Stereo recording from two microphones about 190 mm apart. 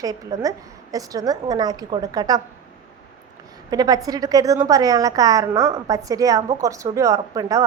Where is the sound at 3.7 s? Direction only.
20° right (ahead or behind).